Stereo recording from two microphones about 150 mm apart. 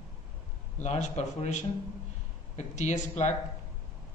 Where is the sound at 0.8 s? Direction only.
50° left (ahead or behind).